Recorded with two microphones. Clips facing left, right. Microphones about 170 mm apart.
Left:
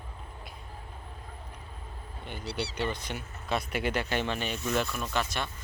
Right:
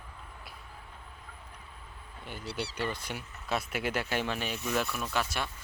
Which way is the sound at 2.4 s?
45° right (ahead or behind).